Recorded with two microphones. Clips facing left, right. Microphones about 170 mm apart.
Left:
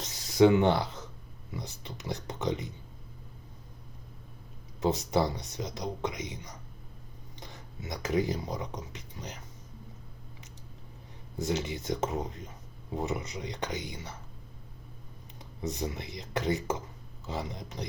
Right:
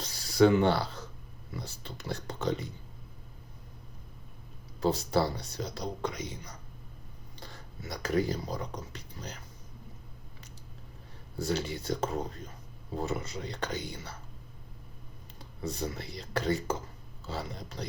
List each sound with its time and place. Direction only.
0.0 s a sound: 20° left (ahead or behind)
1.5 s speech: 15° left (ahead or behind)
4.8 s speech: 20° left (ahead or behind)
11.3 s speech: 20° left (ahead or behind)
15.4 s speech: 20° left (ahead or behind)